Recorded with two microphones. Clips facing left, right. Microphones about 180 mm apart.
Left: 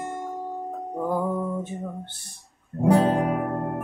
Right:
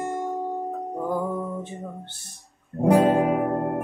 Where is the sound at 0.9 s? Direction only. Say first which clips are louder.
Left 2 dB; centre (ahead or behind).